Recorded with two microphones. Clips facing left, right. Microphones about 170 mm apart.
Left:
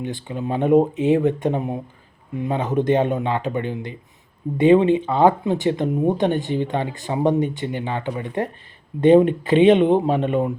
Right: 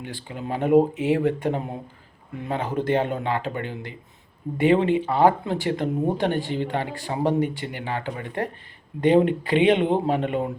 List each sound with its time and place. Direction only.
0.0 s speech: 20° left (ahead or behind)